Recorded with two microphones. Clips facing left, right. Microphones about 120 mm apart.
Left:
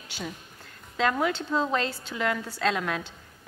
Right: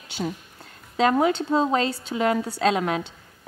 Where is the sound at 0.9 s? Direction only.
25° right (ahead or behind).